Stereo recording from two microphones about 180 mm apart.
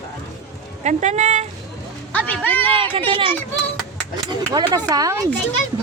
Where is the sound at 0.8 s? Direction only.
40° right (ahead or behind).